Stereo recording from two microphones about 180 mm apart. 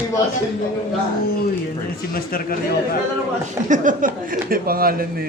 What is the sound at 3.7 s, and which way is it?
Speech, 50° right (ahead or behind).